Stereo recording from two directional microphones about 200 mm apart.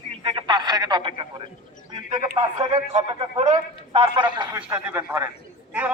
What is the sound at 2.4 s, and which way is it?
A man's voice, 20° right (ahead or behind).